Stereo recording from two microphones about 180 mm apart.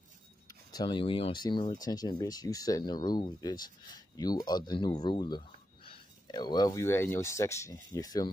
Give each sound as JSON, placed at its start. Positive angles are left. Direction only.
{"t": 0.7, "sound": "speech", "side_deg": 25}